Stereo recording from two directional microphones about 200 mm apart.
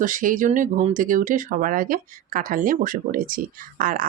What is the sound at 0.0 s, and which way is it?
Speech, 40° right (ahead or behind).